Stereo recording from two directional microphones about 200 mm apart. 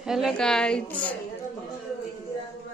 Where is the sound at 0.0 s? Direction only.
Centre (ahead or behind).